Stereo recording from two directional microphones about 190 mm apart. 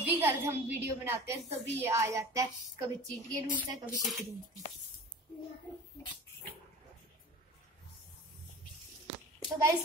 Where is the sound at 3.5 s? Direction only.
5° right (ahead or behind).